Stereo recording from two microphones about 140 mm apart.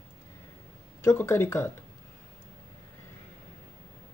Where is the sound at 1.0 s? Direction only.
20° left (ahead or behind).